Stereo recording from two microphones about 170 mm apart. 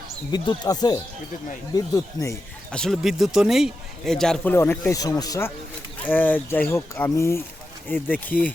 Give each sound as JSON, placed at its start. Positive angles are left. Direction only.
{"t": 0.3, "sound": "speech", "side_deg": 25}
{"t": 2.7, "sound": "a man's voice", "side_deg": 0}
{"t": 4.5, "sound": "speech", "side_deg": 15}